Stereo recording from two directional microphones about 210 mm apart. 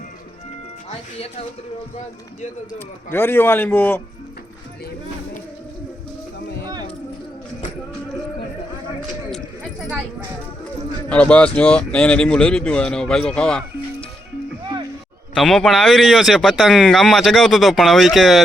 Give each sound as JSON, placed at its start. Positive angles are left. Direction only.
{"t": 0.9, "sound": "speech", "side_deg": 30}
{"t": 2.7, "sound": "speech", "side_deg": 10}
{"t": 11.1, "sound": "speech", "side_deg": 5}
{"t": 14.6, "sound": "music", "side_deg": -20}
{"t": 15.4, "sound": "speech", "side_deg": 0}